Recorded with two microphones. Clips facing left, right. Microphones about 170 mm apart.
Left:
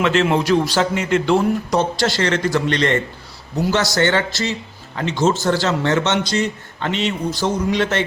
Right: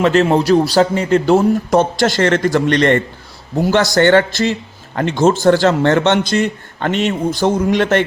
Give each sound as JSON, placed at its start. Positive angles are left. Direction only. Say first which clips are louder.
{"t": 0.0, "sound": "a man's voice", "louder": "right 4 dB", "side_deg": -40}